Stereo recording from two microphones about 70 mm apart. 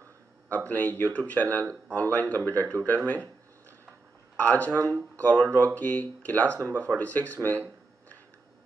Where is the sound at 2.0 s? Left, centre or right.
Left.